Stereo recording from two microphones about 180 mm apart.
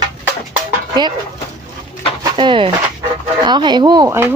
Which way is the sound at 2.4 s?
30° right (ahead or behind).